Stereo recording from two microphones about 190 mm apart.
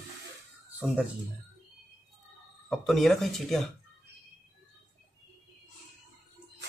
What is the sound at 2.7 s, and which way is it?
A man's voice, centre (ahead or behind).